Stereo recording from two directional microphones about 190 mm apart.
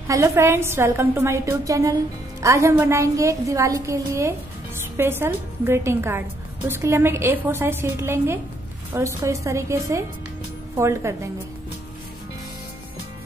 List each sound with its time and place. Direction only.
0.1 s a woman's voice: 15° right (ahead or behind)